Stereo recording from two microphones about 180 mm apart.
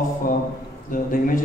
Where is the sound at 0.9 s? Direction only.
50° left (ahead or behind).